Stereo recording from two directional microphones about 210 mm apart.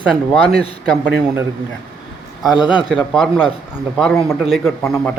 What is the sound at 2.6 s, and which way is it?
A man's voice, 5° right (ahead or behind).